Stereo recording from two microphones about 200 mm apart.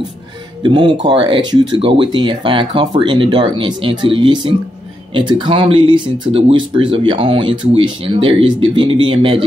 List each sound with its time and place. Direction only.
0.6 s speech: 25° right (ahead or behind)